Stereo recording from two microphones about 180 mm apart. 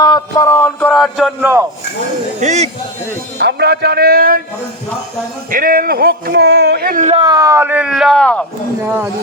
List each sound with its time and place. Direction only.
0.0 s a sound: 20° left (ahead or behind); by 1.3 s centre (ahead or behind)
1.4 s speech: 15° right (ahead or behind)
2.4 s speech: 40° right (ahead or behind)
3.3 s speech: 65° right (ahead or behind)
5.5 s speech: 50° right (ahead or behind)
7.2 s speech: 20° right (ahead or behind); by 8.4 s 5° left (ahead or behind)
8.8 s speech: 15° right (ahead or behind)